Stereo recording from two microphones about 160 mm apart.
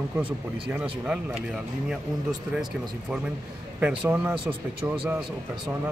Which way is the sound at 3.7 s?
10° right (ahead or behind).